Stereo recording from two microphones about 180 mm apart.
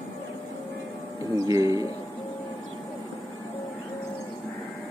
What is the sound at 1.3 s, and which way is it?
Speech, 20° right (ahead or behind).